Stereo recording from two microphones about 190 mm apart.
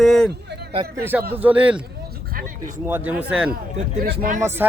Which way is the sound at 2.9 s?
10° right (ahead or behind).